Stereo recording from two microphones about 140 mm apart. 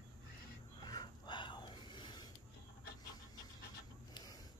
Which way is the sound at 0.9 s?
30° left (ahead or behind).